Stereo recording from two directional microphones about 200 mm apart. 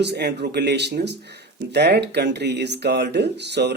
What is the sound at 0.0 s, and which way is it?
Speech, 55° right (ahead or behind).